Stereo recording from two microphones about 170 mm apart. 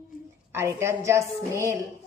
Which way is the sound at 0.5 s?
15° right (ahead or behind).